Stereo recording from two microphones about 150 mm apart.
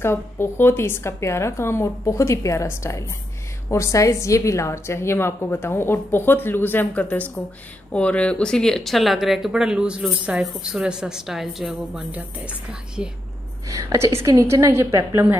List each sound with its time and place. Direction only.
0.0 s a woman's voice: 15° left (ahead or behind); by 13.1 s 5° right (ahead or behind)
13.7 s a woman's voice: 20° right (ahead or behind)